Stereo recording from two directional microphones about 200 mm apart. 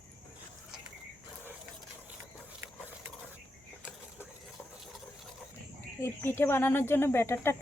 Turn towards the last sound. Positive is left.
turn(degrees=10)  # may be behind; listen again after turning